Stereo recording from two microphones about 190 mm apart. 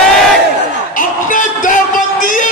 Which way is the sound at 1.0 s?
45° left (ahead or behind).